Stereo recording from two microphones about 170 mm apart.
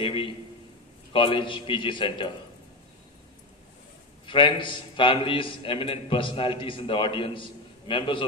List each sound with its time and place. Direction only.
0.0 s a man's voice: 30° left (ahead or behind)
4.3 s a man's voice: 30° left (ahead or behind)